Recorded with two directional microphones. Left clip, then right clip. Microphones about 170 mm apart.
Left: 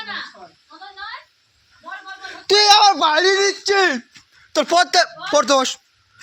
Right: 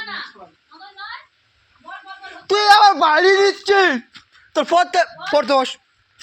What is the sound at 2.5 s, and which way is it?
Speech, 15° left (ahead or behind).